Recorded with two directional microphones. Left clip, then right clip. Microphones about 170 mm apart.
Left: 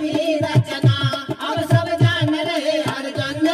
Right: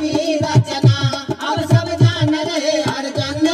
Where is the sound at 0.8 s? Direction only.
35° right (ahead or behind).